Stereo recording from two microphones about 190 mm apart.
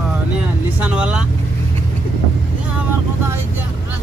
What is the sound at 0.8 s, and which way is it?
Speech, 5° right (ahead or behind).